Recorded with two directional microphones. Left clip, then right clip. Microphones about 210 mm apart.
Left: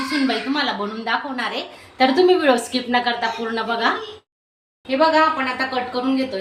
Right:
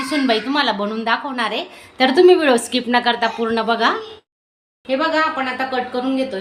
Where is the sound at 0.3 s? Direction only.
35° right (ahead or behind).